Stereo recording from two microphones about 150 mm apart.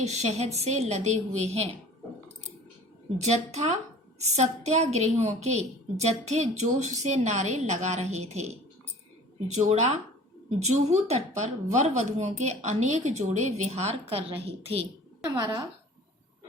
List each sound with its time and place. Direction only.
0.0 s speech: 50° right (ahead or behind)
3.2 s speech: 50° right (ahead or behind)
9.6 s a woman's voice: 50° right (ahead or behind)
15.2 s a woman's voice: 25° right (ahead or behind)